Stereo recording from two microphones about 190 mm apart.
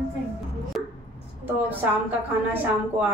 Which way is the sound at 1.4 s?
10° right (ahead or behind).